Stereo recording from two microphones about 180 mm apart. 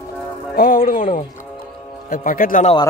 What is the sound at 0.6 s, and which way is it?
Speech, 50° left (ahead or behind).